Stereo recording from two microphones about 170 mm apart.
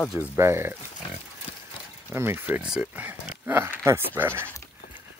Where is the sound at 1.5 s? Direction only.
35° left (ahead or behind).